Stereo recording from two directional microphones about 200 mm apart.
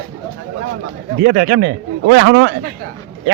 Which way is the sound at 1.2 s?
50° right (ahead or behind).